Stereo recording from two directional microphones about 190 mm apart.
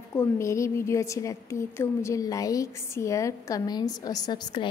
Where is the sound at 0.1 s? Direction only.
15° left (ahead or behind).